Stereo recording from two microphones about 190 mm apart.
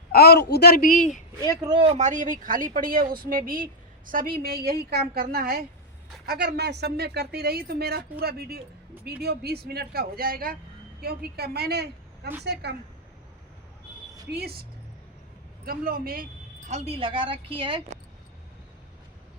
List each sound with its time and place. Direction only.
0.1 s speech: 55° left (ahead or behind)
1.6 s a woman's voice: 25° right (ahead or behind)
2.0 s a woman's voice: 40° right (ahead or behind); by 12.7 s 60° right (ahead or behind)
14.3 s speech: 55° right (ahead or behind)
15.6 s speech: 50° right (ahead or behind)
16.6 s a woman's voice: 35° right (ahead or behind)